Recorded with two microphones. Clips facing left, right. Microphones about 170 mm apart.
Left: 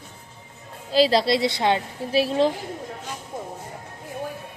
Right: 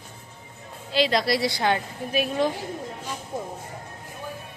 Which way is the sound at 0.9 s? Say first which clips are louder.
Left 4 dB; 35° left (ahead or behind).